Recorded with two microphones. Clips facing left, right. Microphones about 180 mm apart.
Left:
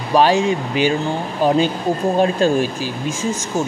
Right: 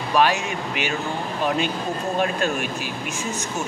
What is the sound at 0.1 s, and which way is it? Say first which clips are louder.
Speech: left 6 dB; 35° left (ahead or behind).